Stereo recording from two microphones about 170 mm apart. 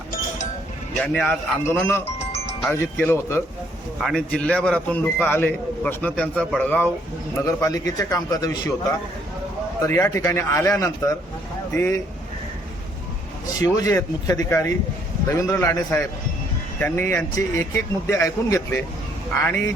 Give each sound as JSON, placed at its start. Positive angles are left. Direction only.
{"t": 0.9, "sound": "a man's voice", "side_deg": 5}
{"t": 4.0, "sound": "a man's voice", "side_deg": 5}
{"t": 7.3, "sound": "a man's voice", "side_deg": 20}
{"t": 9.8, "sound": "a man's voice", "side_deg": 15}
{"t": 13.6, "sound": "a man's voice", "side_deg": 20}